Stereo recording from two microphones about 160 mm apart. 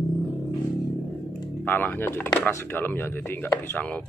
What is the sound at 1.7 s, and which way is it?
Speech, 10° left (ahead or behind).